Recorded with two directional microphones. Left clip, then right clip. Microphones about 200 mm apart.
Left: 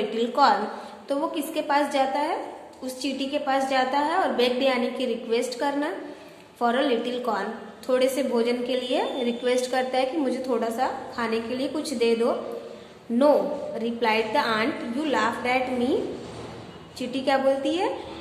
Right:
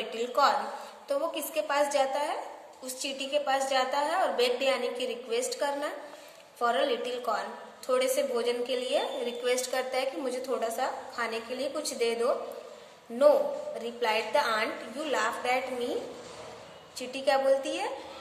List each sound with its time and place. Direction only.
0.1 s a woman's voice: 20° right (ahead or behind)
13.8 s a woman's voice: 20° right (ahead or behind)
17.1 s a woman's voice: 20° right (ahead or behind)